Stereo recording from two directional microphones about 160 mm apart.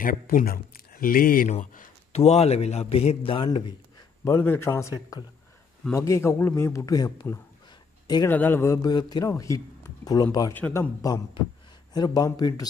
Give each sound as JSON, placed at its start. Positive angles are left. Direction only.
{"t": 0.0, "sound": "speech", "side_deg": 60}
{"t": 2.1, "sound": "a man's voice", "side_deg": 40}
{"t": 4.2, "sound": "a man's voice", "side_deg": 15}
{"t": 5.9, "sound": "a man's voice", "side_deg": 15}
{"t": 8.3, "sound": "a man's voice", "side_deg": 10}